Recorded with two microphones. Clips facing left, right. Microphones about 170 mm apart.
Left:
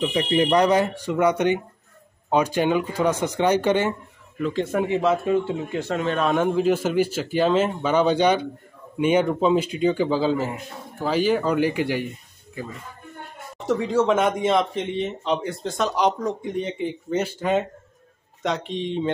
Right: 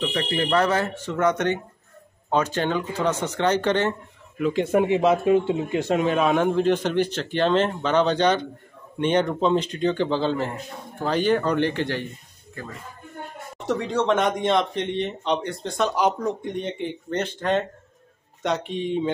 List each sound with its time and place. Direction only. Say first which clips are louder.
0.0 s a man's voice: left 4 dB; 15° left (ahead or behind)
4.4 s a man's voice: right 3 dB; 10° right (ahead or behind); by 12.1 s 10° left (ahead or behind)
13.7 s speech: left 2 dB; centre (ahead or behind)